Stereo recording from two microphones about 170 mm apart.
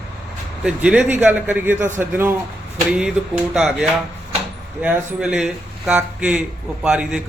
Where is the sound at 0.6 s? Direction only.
5° right (ahead or behind).